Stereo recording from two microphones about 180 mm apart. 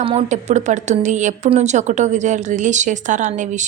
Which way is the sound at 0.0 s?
35° right (ahead or behind).